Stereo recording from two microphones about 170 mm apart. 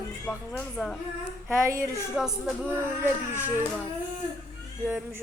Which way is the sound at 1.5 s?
15° right (ahead or behind).